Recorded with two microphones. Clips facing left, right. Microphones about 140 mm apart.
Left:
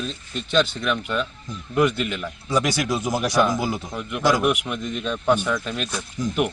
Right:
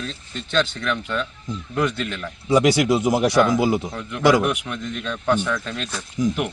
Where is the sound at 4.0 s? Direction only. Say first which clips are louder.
Right 2 dB; 15° left (ahead or behind).